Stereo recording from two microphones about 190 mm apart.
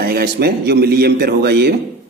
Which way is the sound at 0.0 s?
55° right (ahead or behind).